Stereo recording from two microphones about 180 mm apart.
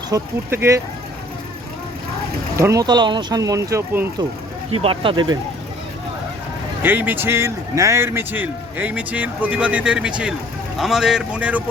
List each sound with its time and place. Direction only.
0.1 s a man's voice: 15° right (ahead or behind)
2.6 s speech: 20° right (ahead or behind)
4.7 s speech: 30° right (ahead or behind)
6.8 s a man's voice: 10° right (ahead or behind)